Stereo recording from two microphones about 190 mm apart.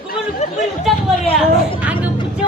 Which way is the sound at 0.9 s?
Centre (ahead or behind).